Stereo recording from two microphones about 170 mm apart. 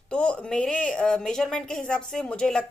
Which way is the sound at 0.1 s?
5° left (ahead or behind).